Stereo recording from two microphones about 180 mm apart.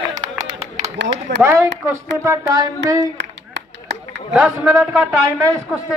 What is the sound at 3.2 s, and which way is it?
Clapping, 80° right.